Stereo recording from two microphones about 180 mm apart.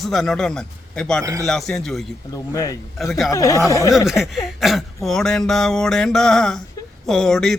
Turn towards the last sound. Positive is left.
turn(degrees=5)  # may be behind; listen again after turning